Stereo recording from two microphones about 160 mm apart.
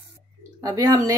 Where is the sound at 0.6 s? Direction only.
20° right (ahead or behind).